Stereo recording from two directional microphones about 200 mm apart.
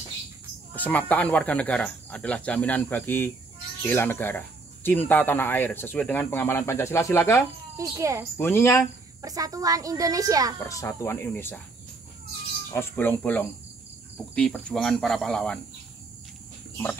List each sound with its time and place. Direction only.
0.7 s speech: 5° left (ahead or behind)
7.7 s speech: 15° right (ahead or behind)
8.4 s speech: 10° left (ahead or behind)
9.2 s speech: 15° right (ahead or behind)
10.6 s speech: 15° left (ahead or behind)
12.7 s speech: 10° left (ahead or behind)